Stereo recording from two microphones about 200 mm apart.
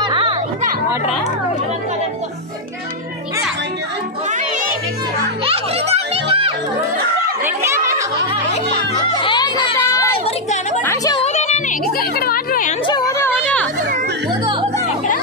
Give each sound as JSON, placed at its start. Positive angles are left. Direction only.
{"t": 0.0, "sound": "music", "side_deg": -25}
{"t": 5.4, "sound": "a child's voice", "side_deg": -30}
{"t": 7.4, "sound": "speech", "side_deg": -15}
{"t": 9.2, "sound": "speech", "side_deg": 25}
{"t": 10.2, "sound": "speech", "side_deg": 35}
{"t": 10.8, "sound": "speech", "side_deg": 15}
{"t": 11.1, "sound": "music", "side_deg": 35}
{"t": 12.0, "sound": "speech", "side_deg": 50}
{"t": 12.8, "sound": "speech", "side_deg": 20}
{"t": 14.4, "sound": "speech", "side_deg": -25}